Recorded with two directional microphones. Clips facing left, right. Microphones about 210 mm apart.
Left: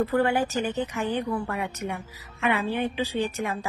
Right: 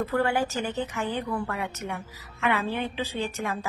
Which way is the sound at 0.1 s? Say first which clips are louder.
Left 2 dB; 15° left (ahead or behind).